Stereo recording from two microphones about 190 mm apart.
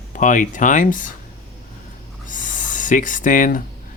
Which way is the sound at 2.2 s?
45° left (ahead or behind).